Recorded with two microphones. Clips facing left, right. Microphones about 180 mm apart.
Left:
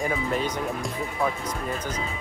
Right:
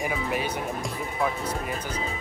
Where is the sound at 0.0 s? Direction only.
5° right (ahead or behind).